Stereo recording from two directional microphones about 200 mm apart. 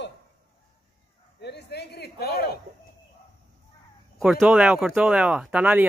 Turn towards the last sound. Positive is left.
turn(degrees=-5)  # may be behind; listen again after turning